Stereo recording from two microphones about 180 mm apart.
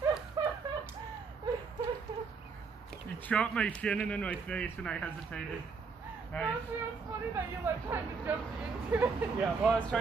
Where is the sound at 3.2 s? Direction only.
5° left (ahead or behind).